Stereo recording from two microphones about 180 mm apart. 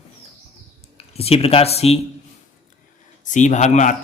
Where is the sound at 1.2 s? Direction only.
35° left (ahead or behind).